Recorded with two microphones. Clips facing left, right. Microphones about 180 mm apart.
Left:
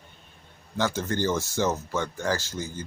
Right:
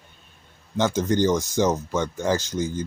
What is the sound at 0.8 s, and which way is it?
Speech, 20° right (ahead or behind).